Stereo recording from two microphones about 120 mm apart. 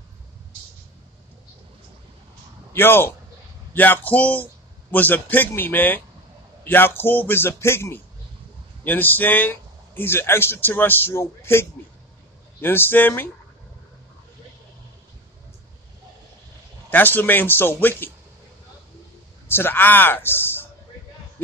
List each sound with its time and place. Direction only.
2.7 s a man's voice: 20° left (ahead or behind)
12.6 s speech: 20° left (ahead or behind)
16.9 s speech: 15° left (ahead or behind)
19.4 s a woman's voice: 20° left (ahead or behind)